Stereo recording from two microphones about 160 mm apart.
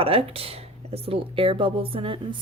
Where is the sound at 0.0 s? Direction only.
35° right (ahead or behind).